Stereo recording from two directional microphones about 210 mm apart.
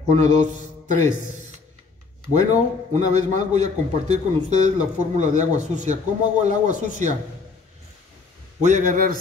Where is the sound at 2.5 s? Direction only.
35° right (ahead or behind).